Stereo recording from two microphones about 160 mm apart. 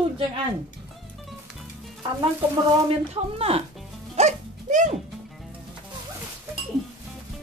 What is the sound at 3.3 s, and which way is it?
Speech, 35° right (ahead or behind).